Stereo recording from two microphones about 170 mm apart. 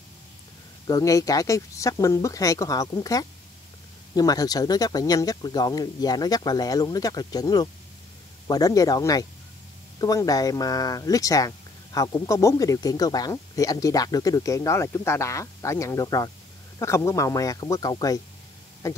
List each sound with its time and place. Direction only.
0.8 s speech: 20° left (ahead or behind)